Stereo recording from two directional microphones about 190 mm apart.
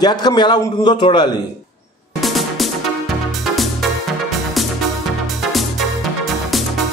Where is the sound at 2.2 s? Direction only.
Centre (ahead or behind).